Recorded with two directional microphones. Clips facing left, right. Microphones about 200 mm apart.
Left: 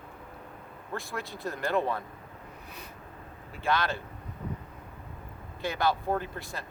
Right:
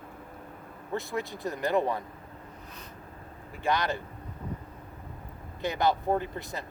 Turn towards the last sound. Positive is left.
turn(degrees=-20)  # may be behind; listen again after turning